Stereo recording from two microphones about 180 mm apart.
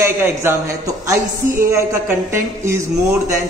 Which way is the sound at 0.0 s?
15° right (ahead or behind).